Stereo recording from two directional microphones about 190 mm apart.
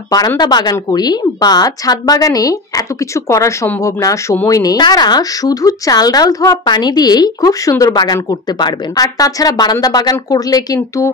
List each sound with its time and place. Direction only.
0.1 s speech: 20° left (ahead or behind)